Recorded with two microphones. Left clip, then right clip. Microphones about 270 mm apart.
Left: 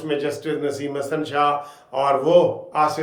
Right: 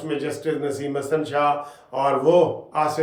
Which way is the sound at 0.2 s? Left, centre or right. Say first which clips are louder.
Left 1 dB; centre.